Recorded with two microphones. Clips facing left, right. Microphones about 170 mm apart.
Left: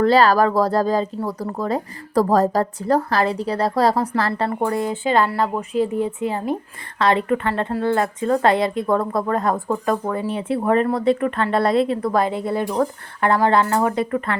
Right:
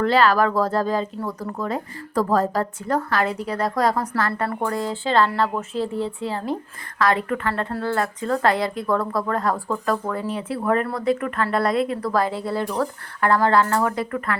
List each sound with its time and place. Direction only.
0.0 s a woman's voice: 35° left (ahead or behind)